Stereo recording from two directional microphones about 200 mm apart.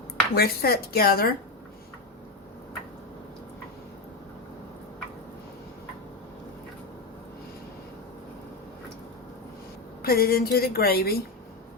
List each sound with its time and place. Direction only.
0.3 s a woman's voice: 50° left (ahead or behind)
10.0 s a woman's voice: 50° left (ahead or behind)